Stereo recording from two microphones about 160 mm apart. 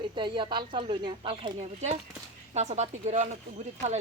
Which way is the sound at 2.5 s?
45° right (ahead or behind).